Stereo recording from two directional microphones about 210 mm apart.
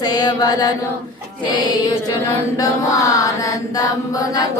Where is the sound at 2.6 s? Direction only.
15° left (ahead or behind).